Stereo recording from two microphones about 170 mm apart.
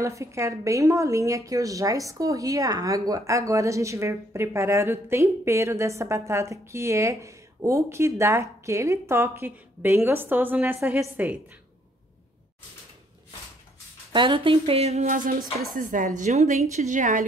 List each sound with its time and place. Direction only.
0.0 s a woman's voice: 20° right (ahead or behind)
14.1 s speech: 30° right (ahead or behind)
15.7 s a woman's voice: 50° right (ahead or behind)